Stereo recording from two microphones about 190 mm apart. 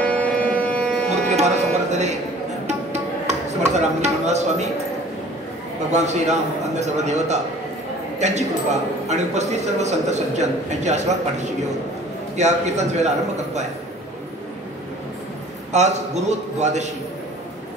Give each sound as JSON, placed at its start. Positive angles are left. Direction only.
{"t": 0.0, "sound": "music", "side_deg": 10}
{"t": 1.0, "sound": "music", "side_deg": -35}
{"t": 5.9, "sound": "a man's voice", "side_deg": -35}
{"t": 15.7, "sound": "a man's voice", "side_deg": -35}